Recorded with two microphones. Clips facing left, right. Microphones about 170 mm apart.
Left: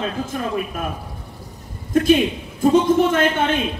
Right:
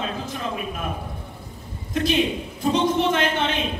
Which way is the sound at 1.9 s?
50° left (ahead or behind).